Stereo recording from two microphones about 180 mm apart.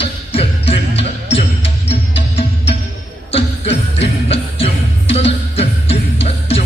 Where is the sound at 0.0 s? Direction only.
30° left (ahead or behind).